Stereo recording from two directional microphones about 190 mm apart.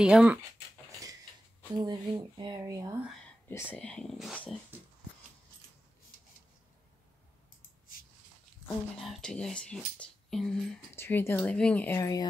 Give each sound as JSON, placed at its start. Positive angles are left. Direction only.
{"t": 0.0, "sound": "speech", "side_deg": -5}
{"t": 1.7, "sound": "speech", "side_deg": -20}
{"t": 3.4, "sound": "speech", "side_deg": 10}
{"t": 8.6, "sound": "speech", "side_deg": 5}